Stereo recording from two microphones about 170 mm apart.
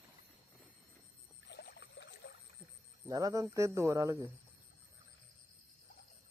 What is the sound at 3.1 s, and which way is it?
Speech, 20° right (ahead or behind).